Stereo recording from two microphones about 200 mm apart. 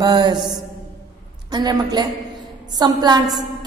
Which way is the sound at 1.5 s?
20° right (ahead or behind).